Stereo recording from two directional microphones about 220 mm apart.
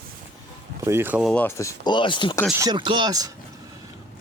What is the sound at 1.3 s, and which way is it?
Speech, 10° left (ahead or behind).